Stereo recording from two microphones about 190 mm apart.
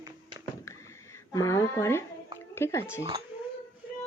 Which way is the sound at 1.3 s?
15° left (ahead or behind).